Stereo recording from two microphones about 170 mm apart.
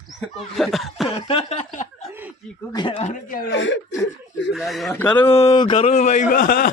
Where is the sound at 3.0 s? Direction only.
45° left (ahead or behind).